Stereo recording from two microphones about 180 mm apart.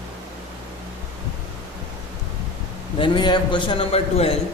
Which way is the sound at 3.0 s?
25° left (ahead or behind).